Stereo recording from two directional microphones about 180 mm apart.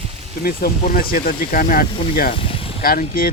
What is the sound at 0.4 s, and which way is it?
Speech, 55° left (ahead or behind).